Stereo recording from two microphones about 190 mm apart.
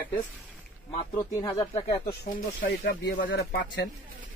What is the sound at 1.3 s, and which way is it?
Speech, 15° left (ahead or behind).